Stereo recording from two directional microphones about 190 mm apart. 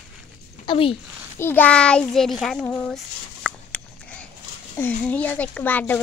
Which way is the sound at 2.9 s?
5° left (ahead or behind).